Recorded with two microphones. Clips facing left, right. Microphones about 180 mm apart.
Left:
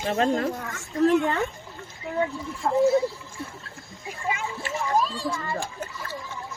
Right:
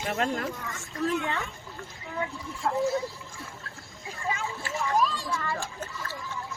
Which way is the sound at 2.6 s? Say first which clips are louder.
Left 5 dB; 15° left (ahead or behind).